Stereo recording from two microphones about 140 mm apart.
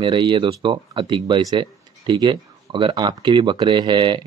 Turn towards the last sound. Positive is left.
turn(degrees=-35)  # may be behind; listen again after turning